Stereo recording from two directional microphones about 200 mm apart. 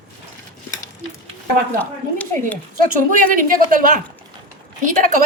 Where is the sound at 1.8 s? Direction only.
5° left (ahead or behind).